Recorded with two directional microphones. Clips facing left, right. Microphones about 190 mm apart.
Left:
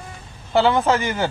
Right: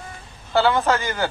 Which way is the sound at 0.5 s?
20° left (ahead or behind).